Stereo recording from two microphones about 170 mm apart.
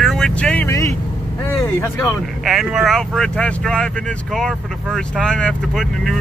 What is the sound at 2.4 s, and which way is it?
Speech, 5° right (ahead or behind).